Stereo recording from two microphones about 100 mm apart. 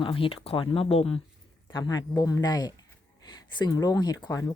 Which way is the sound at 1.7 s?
45° left (ahead or behind).